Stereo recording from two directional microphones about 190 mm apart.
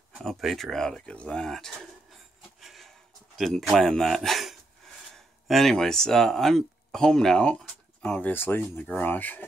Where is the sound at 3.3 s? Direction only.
Centre (ahead or behind).